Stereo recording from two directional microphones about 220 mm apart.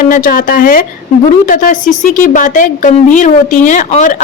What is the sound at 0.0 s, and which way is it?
A woman's voice, 40° left (ahead or behind).